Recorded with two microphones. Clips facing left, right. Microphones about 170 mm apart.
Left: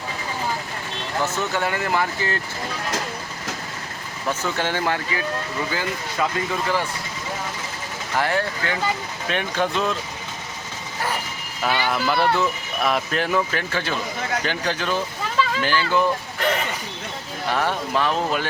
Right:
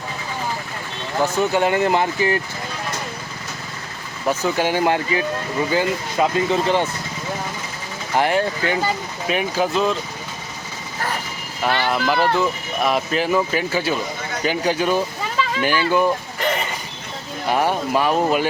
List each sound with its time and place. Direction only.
1.2 s speech: 15° right (ahead or behind)
4.3 s speech: 10° right (ahead or behind)
8.1 s speech: 20° right (ahead or behind); by 10.0 s centre (ahead or behind)
11.9 s speech: centre (ahead or behind)
15.4 s a sound: centre (ahead or behind)
15.6 s speech: 15° right (ahead or behind)
16.4 s a sound: centre (ahead or behind)
17.5 s speech: 15° right (ahead or behind)